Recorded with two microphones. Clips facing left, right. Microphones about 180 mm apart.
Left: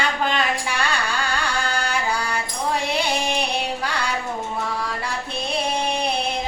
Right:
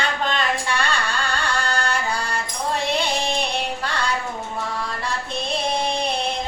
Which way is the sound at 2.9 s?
10° left (ahead or behind).